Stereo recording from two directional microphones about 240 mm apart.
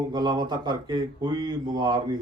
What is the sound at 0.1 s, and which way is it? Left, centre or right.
Speech, centre.